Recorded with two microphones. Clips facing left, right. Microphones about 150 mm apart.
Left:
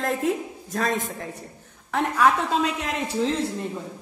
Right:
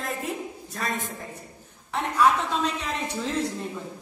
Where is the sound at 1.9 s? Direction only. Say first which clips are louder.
Left 1 dB; 55° left (ahead or behind).